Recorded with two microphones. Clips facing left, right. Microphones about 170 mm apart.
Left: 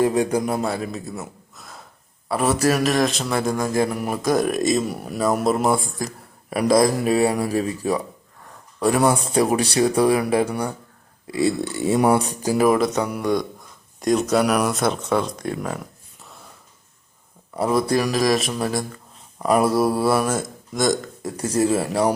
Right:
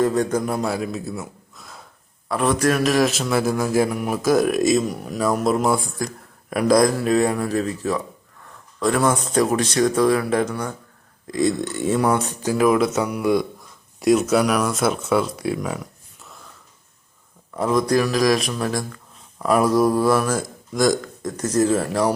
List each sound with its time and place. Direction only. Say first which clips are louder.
0.0 s a man's voice: even; 10° left (ahead or behind)
17.5 s a man's voice: right 1 dB; 5° left (ahead or behind)